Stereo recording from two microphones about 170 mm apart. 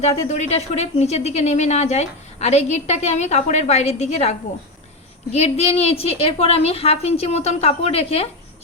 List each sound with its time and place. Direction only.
0.0 s speech: 40° left (ahead or behind)